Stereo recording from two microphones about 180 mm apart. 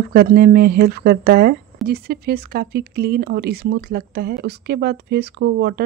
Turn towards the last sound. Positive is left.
turn(degrees=-65)  # may be behind; listen again after turning